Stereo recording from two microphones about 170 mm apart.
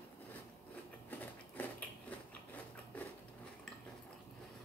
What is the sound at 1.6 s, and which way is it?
Biting, 10° left (ahead or behind).